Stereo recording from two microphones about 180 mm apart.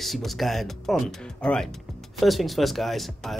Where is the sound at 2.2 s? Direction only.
Centre (ahead or behind).